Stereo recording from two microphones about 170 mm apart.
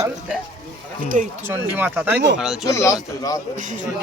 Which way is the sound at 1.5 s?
10° right (ahead or behind).